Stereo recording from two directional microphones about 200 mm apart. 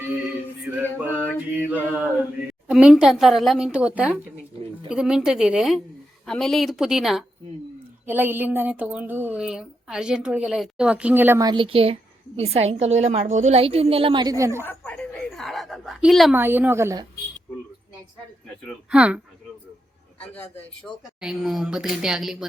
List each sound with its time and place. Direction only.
0.6 s male singing: 10° right (ahead or behind)
1.6 s a woman's voice: 10° right (ahead or behind)
14.6 s a sound: 10° left (ahead or behind)
16.4 s speech: 10° right (ahead or behind)
18.9 s a woman's voice: 5° right (ahead or behind)
20.2 s a man's voice: 5° left (ahead or behind)